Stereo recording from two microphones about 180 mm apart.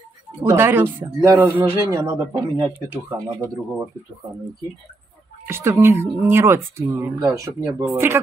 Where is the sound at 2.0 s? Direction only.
10° right (ahead or behind).